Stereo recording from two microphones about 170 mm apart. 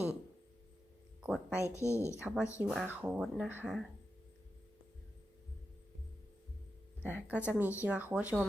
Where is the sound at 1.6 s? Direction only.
15° left (ahead or behind).